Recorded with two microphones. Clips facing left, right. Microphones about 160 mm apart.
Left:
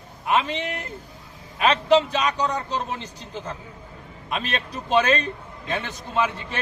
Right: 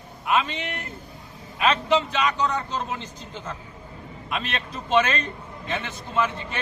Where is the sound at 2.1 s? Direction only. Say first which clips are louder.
Even; 35° left (ahead or behind).